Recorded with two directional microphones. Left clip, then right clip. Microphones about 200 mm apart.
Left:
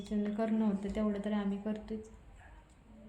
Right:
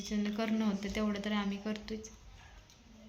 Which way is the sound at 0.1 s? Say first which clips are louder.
Left 1 dB; centre (ahead or behind).